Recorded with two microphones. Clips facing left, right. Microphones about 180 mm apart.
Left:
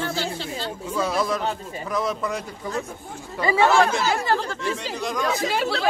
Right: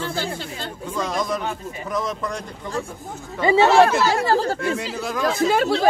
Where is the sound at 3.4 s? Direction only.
25° right (ahead or behind).